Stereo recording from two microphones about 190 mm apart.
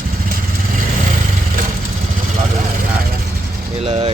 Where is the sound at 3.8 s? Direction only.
30° right (ahead or behind).